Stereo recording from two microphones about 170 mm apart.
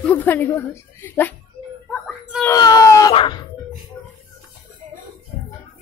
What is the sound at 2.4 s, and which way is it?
Speech, 20° left (ahead or behind).